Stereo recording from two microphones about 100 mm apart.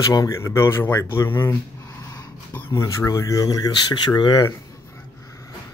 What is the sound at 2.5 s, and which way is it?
Speech, 30° left (ahead or behind).